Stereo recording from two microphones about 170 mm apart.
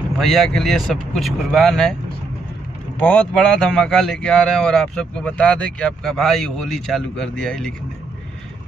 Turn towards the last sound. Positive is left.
turn(degrees=5)  # may be behind; listen again after turning